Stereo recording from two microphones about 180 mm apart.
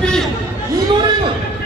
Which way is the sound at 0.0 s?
5° left (ahead or behind).